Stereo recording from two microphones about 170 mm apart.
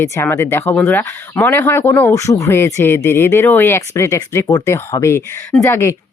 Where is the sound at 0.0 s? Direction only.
15° left (ahead or behind).